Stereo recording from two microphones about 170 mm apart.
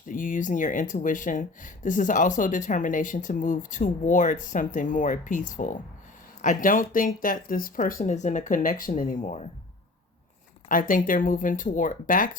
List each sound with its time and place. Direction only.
0.1 s speech: 50° left (ahead or behind)
10.7 s speech: 55° left (ahead or behind)